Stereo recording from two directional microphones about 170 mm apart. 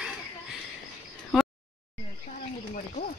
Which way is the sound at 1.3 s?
Centre (ahead or behind).